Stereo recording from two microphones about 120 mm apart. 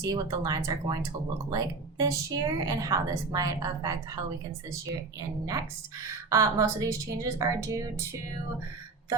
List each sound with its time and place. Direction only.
0.0 s a woman's voice: 30° right (ahead or behind)
6.3 s a woman's voice: 25° right (ahead or behind)